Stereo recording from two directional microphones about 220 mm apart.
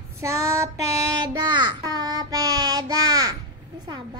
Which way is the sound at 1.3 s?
20° right (ahead or behind).